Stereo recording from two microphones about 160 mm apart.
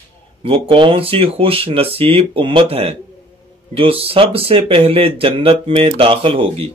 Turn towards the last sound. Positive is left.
turn(degrees=-35)  # may be behind; listen again after turning